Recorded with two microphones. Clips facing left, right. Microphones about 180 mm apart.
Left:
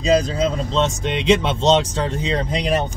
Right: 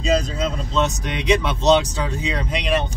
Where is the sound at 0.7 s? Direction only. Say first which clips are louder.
Right 1 dB; 25° left (ahead or behind).